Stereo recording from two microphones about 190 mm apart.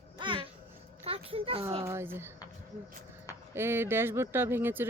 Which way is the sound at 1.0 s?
30° right (ahead or behind).